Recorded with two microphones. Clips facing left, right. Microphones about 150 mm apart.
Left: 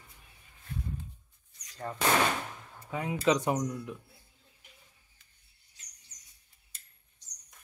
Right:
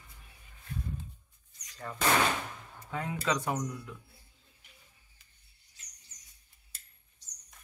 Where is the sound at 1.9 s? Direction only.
35° left (ahead or behind).